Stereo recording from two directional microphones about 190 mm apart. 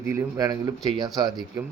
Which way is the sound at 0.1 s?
20° right (ahead or behind).